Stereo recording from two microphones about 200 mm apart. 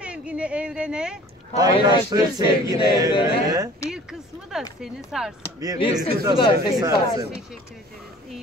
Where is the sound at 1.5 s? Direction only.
20° right (ahead or behind).